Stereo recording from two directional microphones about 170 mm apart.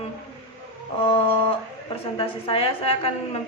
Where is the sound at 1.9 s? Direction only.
35° left (ahead or behind).